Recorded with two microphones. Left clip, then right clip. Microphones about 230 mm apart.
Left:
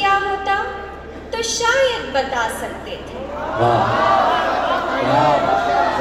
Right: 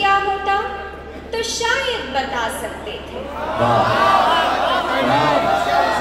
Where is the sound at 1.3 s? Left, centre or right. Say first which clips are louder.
Left 2 dB; left.